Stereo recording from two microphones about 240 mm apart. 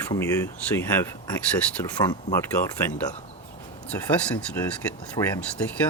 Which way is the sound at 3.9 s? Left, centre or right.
Centre.